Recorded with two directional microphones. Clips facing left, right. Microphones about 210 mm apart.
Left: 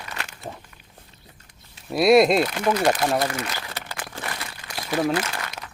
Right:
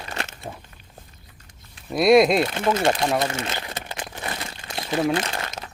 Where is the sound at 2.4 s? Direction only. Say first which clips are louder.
Even; 25° right (ahead or behind).